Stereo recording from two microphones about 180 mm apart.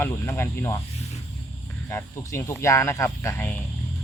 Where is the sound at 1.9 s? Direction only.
15° left (ahead or behind).